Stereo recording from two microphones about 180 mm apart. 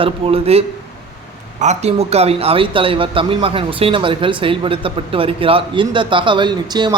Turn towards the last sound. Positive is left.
turn(degrees=-25)  # may be behind; listen again after turning